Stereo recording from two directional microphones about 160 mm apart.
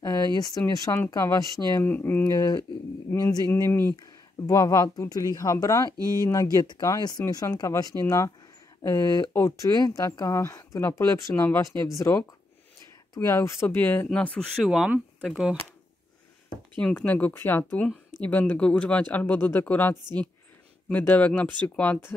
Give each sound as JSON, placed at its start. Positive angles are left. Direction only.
{"t": 0.0, "sound": "a sound", "side_deg": 25}
{"t": 0.9, "sound": "speech", "side_deg": 15}
{"t": 5.9, "sound": "speech", "side_deg": -20}
{"t": 6.2, "sound": "speech", "side_deg": 20}
{"t": 16.8, "sound": "speech", "side_deg": 10}